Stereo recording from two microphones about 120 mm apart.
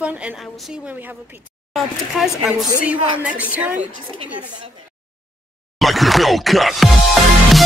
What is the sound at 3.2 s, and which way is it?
Speech, 10° right (ahead or behind).